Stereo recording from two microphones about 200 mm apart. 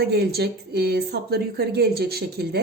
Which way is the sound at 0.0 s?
55° right (ahead or behind).